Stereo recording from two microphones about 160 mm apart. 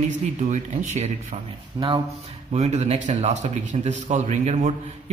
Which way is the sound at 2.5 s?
45° right (ahead or behind).